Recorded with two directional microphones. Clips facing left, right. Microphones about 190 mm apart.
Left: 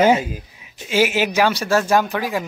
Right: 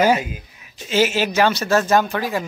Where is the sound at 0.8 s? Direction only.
10° left (ahead or behind).